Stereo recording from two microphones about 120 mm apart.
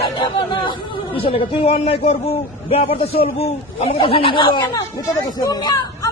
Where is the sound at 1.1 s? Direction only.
50° left (ahead or behind).